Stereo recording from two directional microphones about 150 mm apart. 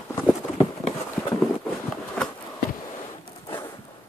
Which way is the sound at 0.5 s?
45° left (ahead or behind).